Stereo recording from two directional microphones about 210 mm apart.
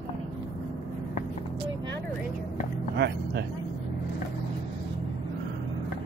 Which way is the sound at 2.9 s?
50° right (ahead or behind).